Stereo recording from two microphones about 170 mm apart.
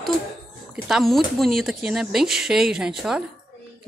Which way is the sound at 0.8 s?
Centre (ahead or behind).